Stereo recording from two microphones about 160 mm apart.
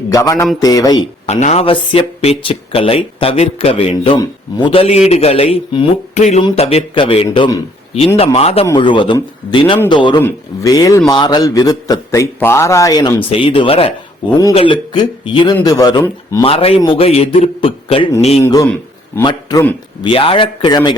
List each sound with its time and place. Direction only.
0.1 s a man's voice: 20° left (ahead or behind)
1.3 s speech: 45° left (ahead or behind)
8.6 s a man's voice: 25° left (ahead or behind)
10.2 s a man's voice: 15° left (ahead or behind)
16.4 s speech: 35° left (ahead or behind)
19.2 s a man's voice: 25° left (ahead or behind)